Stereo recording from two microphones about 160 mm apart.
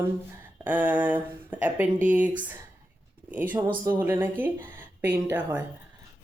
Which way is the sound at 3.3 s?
10° right (ahead or behind).